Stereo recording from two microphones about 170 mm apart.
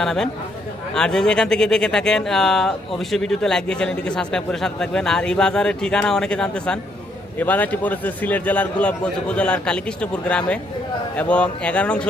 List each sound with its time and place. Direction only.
0.0 s a man's voice: 5° left (ahead or behind)